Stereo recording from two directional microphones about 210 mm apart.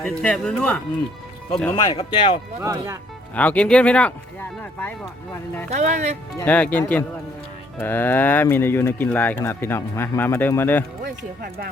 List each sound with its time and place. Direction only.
0.0 s speech: 5° left (ahead or behind)
1.7 s speech: 25° left (ahead or behind)
2.6 s speech: 15° right (ahead or behind)
3.3 s speech: 5° left (ahead or behind)
5.7 s speech: 35° right (ahead or behind)
6.3 s speech: 10° left (ahead or behind)
11.0 s speech: 45° right (ahead or behind)